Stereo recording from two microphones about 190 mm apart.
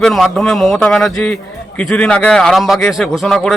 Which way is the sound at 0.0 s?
Centre (ahead or behind).